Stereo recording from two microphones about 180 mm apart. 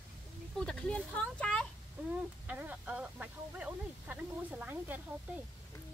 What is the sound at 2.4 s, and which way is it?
Speech, 10° right (ahead or behind).